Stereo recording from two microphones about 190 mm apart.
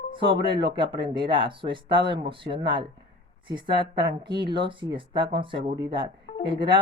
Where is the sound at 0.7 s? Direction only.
25° right (ahead or behind).